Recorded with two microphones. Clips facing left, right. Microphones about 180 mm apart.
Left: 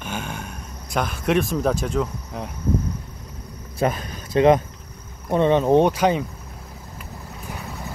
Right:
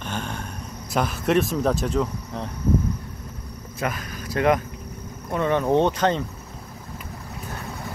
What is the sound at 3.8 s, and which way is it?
Speech, 25° left (ahead or behind).